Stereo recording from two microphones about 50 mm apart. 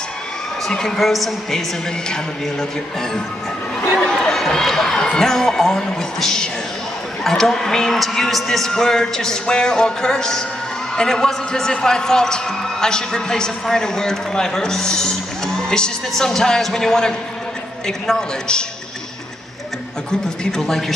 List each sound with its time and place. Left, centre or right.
0.7 s a man's voice: centre
4.0 s crowd: centre
4.4 s a man's voice: centre
20.1 s a man's voice: centre